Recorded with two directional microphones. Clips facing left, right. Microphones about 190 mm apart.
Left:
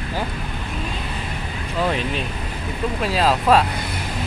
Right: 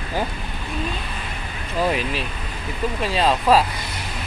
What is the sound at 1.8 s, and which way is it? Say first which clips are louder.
Speech: even; 5° right (ahead or behind).